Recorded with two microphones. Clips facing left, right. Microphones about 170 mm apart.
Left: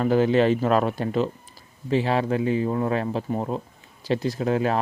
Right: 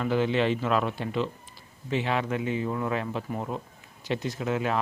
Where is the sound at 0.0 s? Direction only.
40° left (ahead or behind).